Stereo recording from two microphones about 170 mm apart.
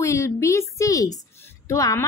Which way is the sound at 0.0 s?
15° left (ahead or behind).